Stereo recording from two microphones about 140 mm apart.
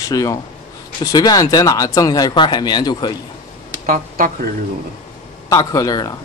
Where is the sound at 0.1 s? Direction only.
25° left (ahead or behind).